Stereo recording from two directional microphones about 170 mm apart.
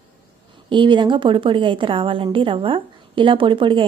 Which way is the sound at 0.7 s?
30° right (ahead or behind).